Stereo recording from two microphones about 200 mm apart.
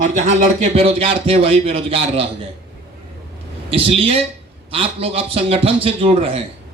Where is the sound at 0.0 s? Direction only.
35° right (ahead or behind).